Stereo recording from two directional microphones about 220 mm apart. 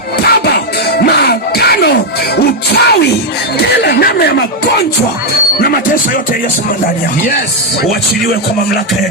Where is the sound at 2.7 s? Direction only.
45° left (ahead or behind).